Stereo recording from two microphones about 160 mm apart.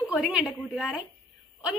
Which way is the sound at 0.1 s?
5° right (ahead or behind).